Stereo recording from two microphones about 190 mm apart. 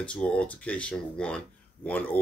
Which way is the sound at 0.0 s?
5° left (ahead or behind).